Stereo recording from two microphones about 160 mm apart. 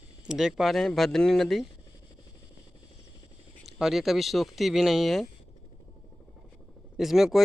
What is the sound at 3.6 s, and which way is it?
Speech, centre (ahead or behind).